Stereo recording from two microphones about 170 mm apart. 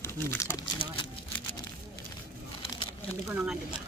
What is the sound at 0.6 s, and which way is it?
Speech, 30° left (ahead or behind).